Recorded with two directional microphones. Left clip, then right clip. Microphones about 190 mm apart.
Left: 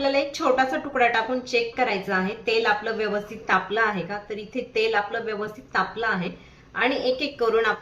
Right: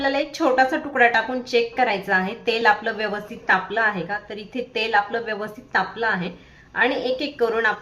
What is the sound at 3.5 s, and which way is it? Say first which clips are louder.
A woman's voice: right 2 dB; 20° right (ahead or behind).